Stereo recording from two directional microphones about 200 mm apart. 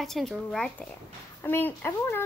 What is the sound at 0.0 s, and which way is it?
A child's voice, centre (ahead or behind).